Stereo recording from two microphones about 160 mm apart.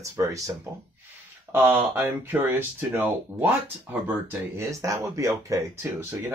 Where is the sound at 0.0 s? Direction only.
20° right (ahead or behind).